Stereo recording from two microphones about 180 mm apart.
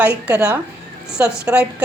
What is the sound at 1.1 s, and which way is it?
Speech, 5° right (ahead or behind).